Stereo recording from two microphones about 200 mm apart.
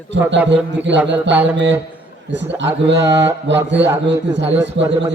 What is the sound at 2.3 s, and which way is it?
Speech, 65° right (ahead or behind).